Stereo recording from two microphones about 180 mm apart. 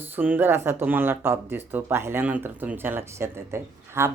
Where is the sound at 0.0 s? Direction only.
10° right (ahead or behind).